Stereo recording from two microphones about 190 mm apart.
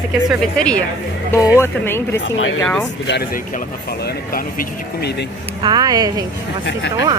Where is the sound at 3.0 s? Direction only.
60° left (ahead or behind).